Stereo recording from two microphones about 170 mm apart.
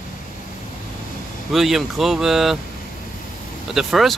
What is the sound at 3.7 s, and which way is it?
Speech, centre (ahead or behind).